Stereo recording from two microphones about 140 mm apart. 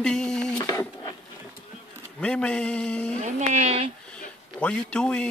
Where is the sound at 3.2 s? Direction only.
55° right (ahead or behind).